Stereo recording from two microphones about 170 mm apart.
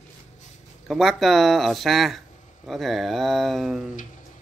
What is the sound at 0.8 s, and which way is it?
Speech, centre (ahead or behind).